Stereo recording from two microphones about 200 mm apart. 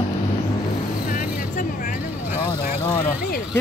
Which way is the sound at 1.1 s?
45° left (ahead or behind).